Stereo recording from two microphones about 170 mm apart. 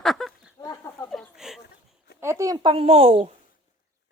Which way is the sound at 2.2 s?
15° right (ahead or behind).